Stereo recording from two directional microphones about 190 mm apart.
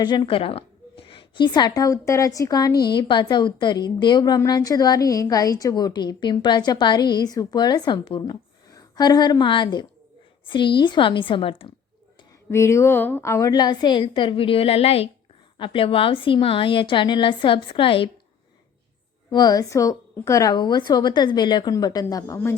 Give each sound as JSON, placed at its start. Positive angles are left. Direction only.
{"t": 0.0, "sound": "a woman's voice", "side_deg": 25}
{"t": 12.5, "sound": "a woman's voice", "side_deg": 15}
{"t": 19.3, "sound": "a woman's voice", "side_deg": 20}